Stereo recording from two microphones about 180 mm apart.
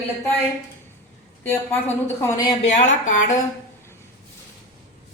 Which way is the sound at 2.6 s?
40° left (ahead or behind).